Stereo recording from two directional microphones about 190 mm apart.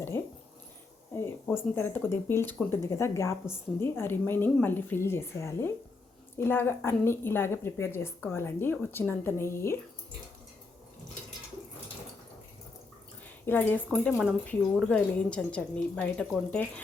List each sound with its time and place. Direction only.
0.1 s a woman's voice: 15° left (ahead or behind)
1.5 s a woman's voice: 10° left (ahead or behind)
13.4 s speech: 10° left (ahead or behind)
13.9 s speech: centre (ahead or behind)